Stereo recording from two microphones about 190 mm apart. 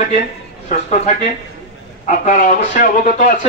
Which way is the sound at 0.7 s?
40° left (ahead or behind).